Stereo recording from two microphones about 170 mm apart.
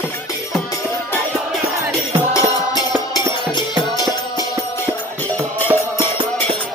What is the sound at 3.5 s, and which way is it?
Music, 25° left (ahead or behind).